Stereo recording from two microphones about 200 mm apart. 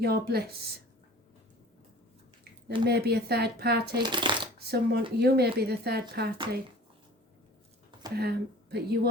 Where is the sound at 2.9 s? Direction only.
55° right (ahead or behind).